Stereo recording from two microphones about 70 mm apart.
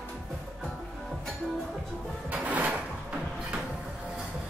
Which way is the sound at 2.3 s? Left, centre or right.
Right.